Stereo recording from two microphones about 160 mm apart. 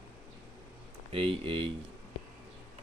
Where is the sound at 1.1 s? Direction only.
35° right (ahead or behind).